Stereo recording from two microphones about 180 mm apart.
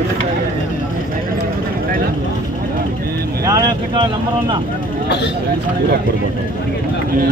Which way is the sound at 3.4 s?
20° right (ahead or behind).